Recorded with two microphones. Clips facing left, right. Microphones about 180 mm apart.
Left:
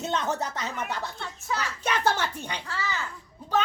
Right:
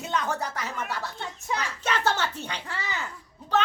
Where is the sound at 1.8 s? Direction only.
15° left (ahead or behind).